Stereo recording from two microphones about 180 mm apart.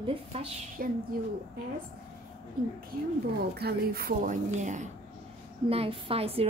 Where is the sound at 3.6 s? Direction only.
55° right (ahead or behind).